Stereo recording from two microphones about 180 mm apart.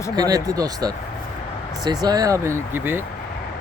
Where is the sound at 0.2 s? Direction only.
20° right (ahead or behind).